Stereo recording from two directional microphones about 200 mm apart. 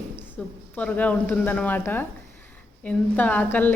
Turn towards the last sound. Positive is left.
turn(degrees=10)  # may be behind; listen again after turning